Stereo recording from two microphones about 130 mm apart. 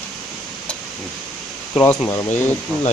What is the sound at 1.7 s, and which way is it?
Speech, 15° left (ahead or behind).